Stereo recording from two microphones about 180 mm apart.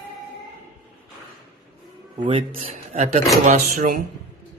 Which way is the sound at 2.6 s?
40° right (ahead or behind).